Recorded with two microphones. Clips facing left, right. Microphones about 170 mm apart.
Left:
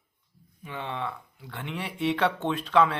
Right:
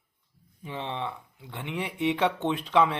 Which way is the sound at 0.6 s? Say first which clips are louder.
Even; 25° right (ahead or behind).